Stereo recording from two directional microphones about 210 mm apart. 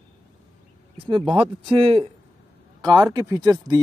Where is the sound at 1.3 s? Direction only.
25° right (ahead or behind).